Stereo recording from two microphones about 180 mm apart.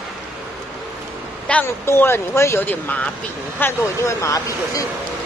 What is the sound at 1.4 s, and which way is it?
Speech, 10° left (ahead or behind).